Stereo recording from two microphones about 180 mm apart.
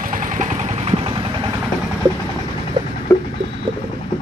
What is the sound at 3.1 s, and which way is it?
Vehicle, 10° left (ahead or behind).